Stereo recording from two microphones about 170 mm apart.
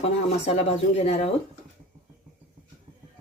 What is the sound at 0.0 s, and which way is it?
Speech, 40° left (ahead or behind).